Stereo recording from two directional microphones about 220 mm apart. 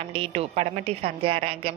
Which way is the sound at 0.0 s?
25° right (ahead or behind).